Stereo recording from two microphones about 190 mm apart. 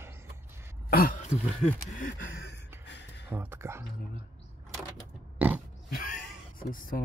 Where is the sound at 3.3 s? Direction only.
10° right (ahead or behind).